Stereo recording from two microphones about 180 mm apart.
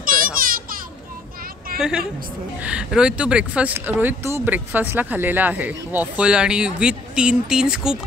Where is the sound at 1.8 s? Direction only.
5° right (ahead or behind).